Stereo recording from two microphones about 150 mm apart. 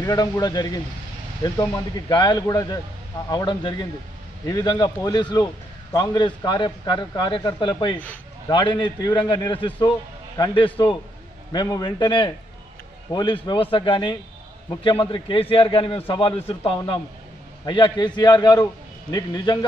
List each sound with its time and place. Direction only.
0.0 s a man's voice: 25° left (ahead or behind)